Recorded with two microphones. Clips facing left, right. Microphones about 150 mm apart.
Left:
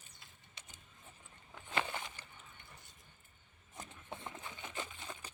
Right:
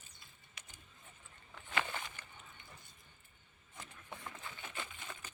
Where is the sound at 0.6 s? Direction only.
30° left (ahead or behind).